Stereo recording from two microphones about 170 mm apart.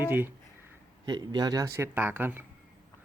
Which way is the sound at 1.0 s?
25° right (ahead or behind).